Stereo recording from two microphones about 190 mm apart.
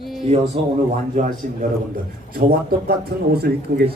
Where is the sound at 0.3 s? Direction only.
35° right (ahead or behind).